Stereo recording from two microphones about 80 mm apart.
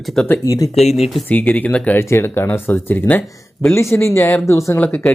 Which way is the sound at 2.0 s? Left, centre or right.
Left.